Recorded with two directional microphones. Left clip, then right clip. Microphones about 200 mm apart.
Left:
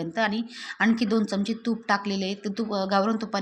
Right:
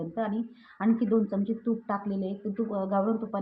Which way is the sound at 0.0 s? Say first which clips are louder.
Left 6 dB; 20° left (ahead or behind).